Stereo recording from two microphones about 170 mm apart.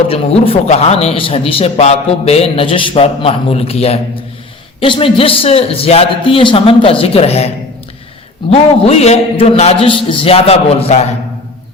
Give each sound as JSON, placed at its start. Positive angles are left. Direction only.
{"t": 0.1, "sound": "a man's voice", "side_deg": 35}